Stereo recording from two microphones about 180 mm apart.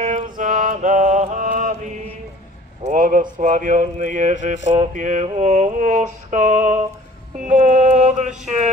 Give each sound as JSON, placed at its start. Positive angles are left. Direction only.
{"t": 0.0, "sound": "mantra", "side_deg": -45}
{"t": 2.9, "sound": "speech", "side_deg": -45}
{"t": 7.4, "sound": "mantra", "side_deg": -40}